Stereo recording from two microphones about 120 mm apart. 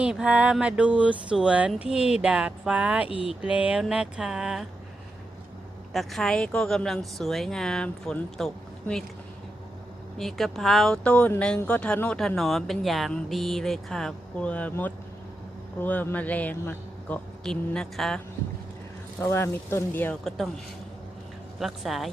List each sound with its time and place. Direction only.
0.0 s speech: 10° right (ahead or behind)
3.1 s speech: 50° left (ahead or behind)
3.4 s speech: 10° right (ahead or behind)
5.9 s speech: centre (ahead or behind)
10.2 s a man's voice: centre (ahead or behind)
19.2 s speech: 20° left (ahead or behind)
20.2 s speech: centre (ahead or behind)
21.6 s speech: centre (ahead or behind)